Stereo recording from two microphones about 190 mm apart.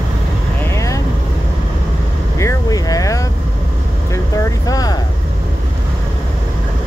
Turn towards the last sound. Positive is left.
turn(degrees=20)  # may be behind; listen again after turning